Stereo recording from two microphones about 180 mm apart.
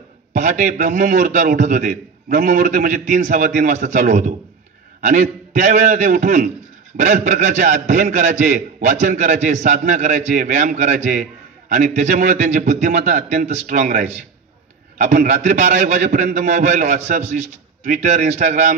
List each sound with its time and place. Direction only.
0.3 s a man's voice: 45° right (ahead or behind)